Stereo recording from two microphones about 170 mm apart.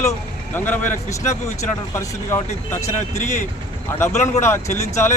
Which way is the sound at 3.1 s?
45° left (ahead or behind).